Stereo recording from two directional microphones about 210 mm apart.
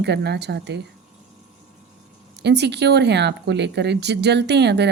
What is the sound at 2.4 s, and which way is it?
Speech, 55° right (ahead or behind).